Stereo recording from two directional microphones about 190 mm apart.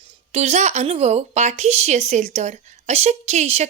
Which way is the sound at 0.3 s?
35° right (ahead or behind).